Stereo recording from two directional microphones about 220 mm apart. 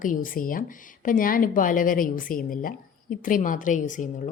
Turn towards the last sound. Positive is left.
turn(degrees=35)  # may be behind; listen again after turning